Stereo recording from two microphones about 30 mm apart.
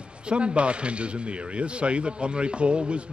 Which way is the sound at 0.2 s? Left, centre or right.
Right.